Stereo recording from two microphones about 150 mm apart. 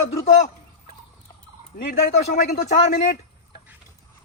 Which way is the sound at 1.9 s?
85° left.